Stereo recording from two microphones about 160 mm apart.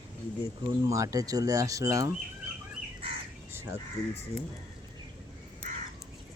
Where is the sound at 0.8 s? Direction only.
20° right (ahead or behind).